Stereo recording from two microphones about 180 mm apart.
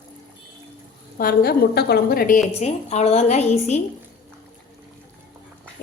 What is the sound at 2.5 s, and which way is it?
Speech, 35° left (ahead or behind).